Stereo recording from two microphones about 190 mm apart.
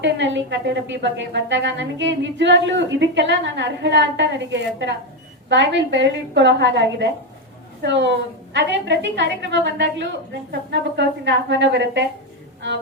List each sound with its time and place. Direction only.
0.0 s a woman's voice: 70° right (ahead or behind)